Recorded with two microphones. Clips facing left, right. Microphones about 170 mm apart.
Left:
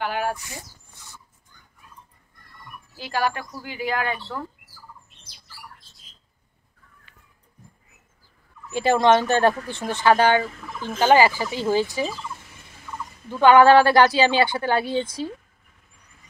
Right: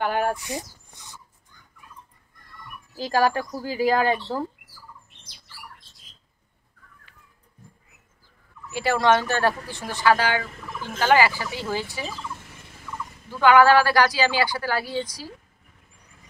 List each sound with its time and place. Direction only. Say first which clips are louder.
0.0 s a sound: right 2 dB; 50° right (ahead or behind)
3.0 s speech: right 4 dB; 40° right (ahead or behind)
8.7 s speech: left 3 dB; 20° left (ahead or behind)
13.3 s speech: left 3 dB; 20° left (ahead or behind)